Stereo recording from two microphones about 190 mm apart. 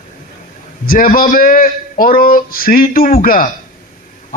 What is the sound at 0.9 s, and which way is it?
A man's voice, 50° left (ahead or behind).